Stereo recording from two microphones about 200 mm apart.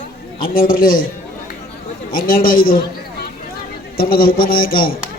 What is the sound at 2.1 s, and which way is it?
A man's voice, 45° left (ahead or behind).